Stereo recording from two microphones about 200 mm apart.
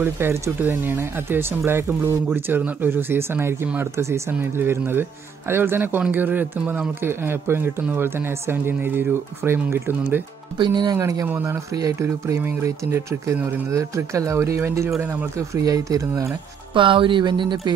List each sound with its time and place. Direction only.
0.0 s speech: 10° right (ahead or behind)
10.6 s speech: 20° right (ahead or behind)